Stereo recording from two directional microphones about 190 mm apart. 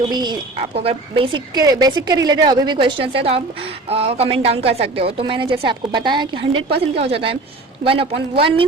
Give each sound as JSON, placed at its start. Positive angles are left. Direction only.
{"t": 0.1, "sound": "a woman's voice", "side_deg": -20}